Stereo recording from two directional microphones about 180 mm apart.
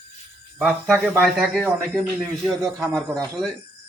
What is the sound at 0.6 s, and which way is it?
Speech, 5° left (ahead or behind).